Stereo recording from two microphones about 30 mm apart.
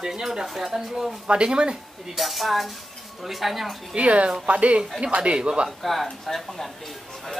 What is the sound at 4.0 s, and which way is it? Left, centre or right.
Speech, right.